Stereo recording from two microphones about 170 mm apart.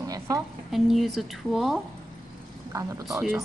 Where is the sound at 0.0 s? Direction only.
20° right (ahead or behind).